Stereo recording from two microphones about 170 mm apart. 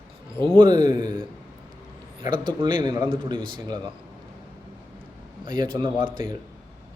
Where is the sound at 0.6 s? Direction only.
25° right (ahead or behind).